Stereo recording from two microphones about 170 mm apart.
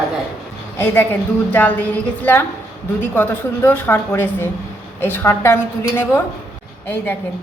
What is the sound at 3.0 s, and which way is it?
A woman's voice, 10° left (ahead or behind).